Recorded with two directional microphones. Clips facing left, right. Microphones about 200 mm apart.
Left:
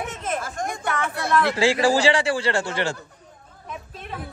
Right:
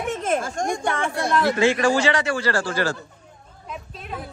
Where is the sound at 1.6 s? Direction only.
30° left (ahead or behind).